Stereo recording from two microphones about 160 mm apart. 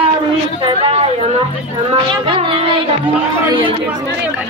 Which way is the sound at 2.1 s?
35° right (ahead or behind).